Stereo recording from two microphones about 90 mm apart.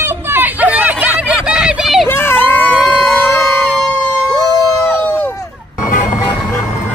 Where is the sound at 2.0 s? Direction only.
25° left (ahead or behind).